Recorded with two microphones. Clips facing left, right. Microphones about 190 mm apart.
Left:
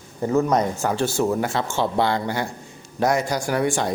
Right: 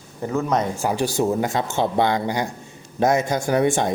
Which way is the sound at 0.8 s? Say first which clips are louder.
Even; 15° right (ahead or behind).